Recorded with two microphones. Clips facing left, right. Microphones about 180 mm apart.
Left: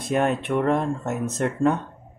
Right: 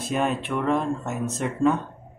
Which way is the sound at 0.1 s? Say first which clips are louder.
Left 3 dB; 65° left (ahead or behind).